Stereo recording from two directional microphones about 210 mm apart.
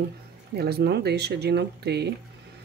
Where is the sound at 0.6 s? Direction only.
50° right (ahead or behind).